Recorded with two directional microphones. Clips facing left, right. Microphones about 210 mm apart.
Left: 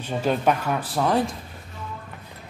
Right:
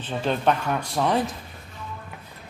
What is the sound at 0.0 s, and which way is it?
Speech, 10° left (ahead or behind).